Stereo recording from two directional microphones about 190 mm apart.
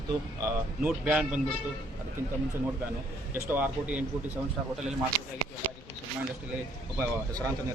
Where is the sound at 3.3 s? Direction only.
10° right (ahead or behind).